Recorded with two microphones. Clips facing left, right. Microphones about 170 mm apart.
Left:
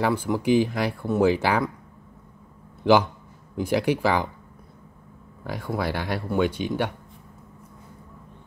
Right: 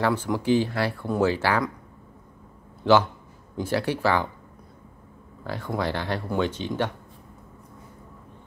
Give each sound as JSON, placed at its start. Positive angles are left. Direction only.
{"t": 0.0, "sound": "speech", "side_deg": 10}
{"t": 2.8, "sound": "a man's voice", "side_deg": 15}
{"t": 5.4, "sound": "speech", "side_deg": 15}